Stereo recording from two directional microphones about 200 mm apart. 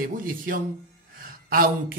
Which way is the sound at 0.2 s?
45° right (ahead or behind).